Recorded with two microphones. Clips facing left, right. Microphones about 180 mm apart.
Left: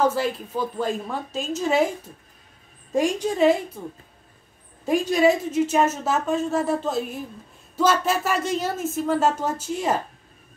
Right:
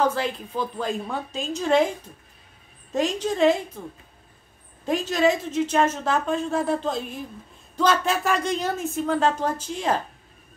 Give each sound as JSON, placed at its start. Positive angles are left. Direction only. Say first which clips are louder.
{"t": 0.1, "sound": "speech", "louder": "left 2 dB", "side_deg": 5}
{"t": 2.9, "sound": "a woman's voice", "louder": "left 2 dB", "side_deg": 10}
{"t": 4.8, "sound": "a woman's voice", "louder": "left 3 dB", "side_deg": 10}